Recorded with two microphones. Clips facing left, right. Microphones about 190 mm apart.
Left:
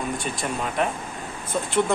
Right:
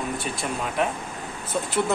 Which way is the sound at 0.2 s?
Centre (ahead or behind).